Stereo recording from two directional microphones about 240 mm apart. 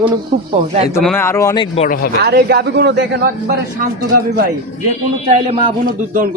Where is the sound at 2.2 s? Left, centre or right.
Right.